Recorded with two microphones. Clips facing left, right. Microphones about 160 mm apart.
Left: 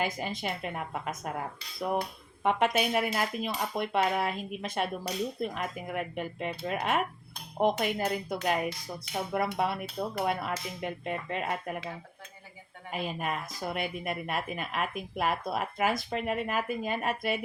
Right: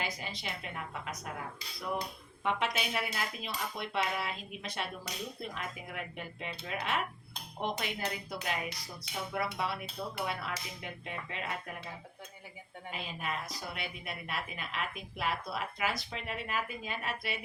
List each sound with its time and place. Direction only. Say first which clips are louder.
0.0 s speech: left 7 dB; 50° left (ahead or behind)
12.9 s speech: left 6 dB; 50° left (ahead or behind)